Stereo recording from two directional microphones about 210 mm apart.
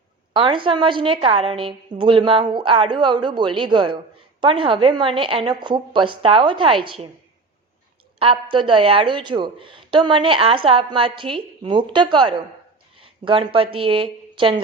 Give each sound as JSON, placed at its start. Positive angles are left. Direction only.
{"t": 0.3, "sound": "a woman's voice", "side_deg": -25}
{"t": 8.2, "sound": "a woman's voice", "side_deg": -25}